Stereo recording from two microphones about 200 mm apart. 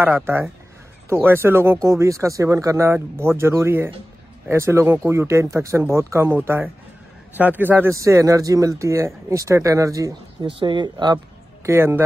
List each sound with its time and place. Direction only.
0.0 s speech: 10° right (ahead or behind)